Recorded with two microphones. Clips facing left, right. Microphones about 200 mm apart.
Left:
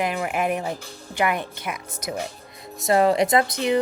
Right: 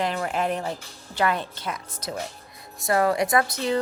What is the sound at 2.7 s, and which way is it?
Speech, 20° left (ahead or behind).